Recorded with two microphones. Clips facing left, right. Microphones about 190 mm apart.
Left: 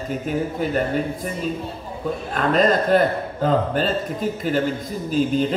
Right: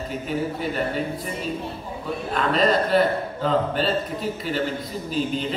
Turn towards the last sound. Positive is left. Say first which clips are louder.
# left 5 dB
turn(degrees=45)  # may be behind; listen again after turning